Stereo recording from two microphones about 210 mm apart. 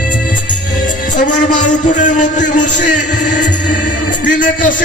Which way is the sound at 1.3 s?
35° left (ahead or behind).